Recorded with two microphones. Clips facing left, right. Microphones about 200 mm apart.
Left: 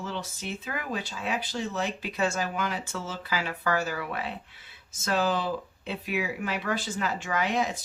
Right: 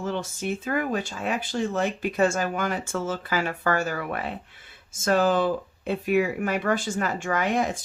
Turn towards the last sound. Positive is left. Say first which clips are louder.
# right 3 dB
turn(degrees=-50)  # may be behind; listen again after turning